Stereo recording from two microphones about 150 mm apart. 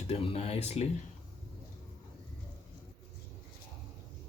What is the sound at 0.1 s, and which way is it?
Speech, 40° left (ahead or behind).